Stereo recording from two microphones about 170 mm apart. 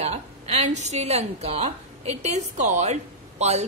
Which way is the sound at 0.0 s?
40° right (ahead or behind).